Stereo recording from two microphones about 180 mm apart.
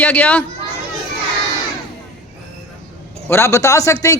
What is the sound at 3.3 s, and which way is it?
Speech, 15° left (ahead or behind).